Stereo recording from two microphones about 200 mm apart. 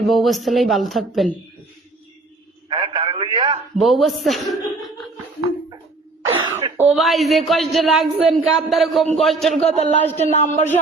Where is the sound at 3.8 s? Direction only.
Centre (ahead or behind).